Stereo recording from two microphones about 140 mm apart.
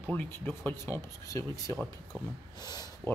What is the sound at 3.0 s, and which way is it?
Speech, 20° left (ahead or behind).